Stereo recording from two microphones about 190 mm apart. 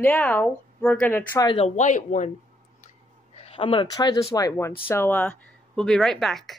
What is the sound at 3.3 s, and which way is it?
A woman's voice, 30° left (ahead or behind).